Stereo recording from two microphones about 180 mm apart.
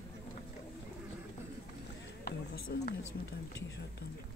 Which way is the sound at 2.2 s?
60° left (ahead or behind).